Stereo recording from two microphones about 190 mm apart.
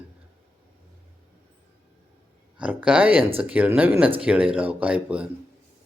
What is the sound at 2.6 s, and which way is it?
A man's voice, 5° right (ahead or behind).